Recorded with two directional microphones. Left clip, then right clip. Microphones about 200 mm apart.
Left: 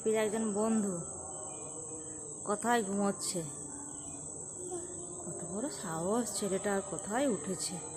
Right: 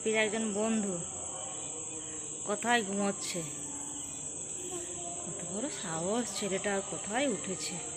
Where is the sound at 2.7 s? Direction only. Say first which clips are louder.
Right 2 dB; 15° left (ahead or behind).